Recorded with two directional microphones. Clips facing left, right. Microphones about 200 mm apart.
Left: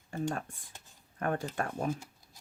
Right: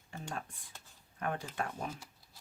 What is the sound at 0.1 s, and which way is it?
Speech, 55° left (ahead or behind).